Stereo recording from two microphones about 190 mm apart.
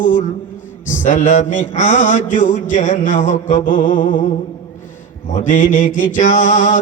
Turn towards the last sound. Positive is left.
turn(degrees=45)  # may be behind; listen again after turning